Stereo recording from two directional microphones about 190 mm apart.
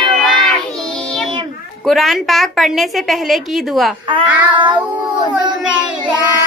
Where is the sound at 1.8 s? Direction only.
Centre (ahead or behind).